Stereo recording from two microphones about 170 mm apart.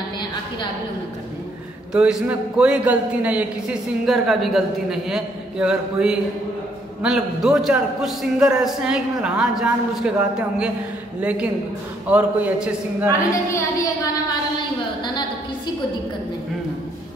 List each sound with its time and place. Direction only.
2.0 s a man's voice: 5° right (ahead or behind)
13.3 s a woman's voice: 15° left (ahead or behind)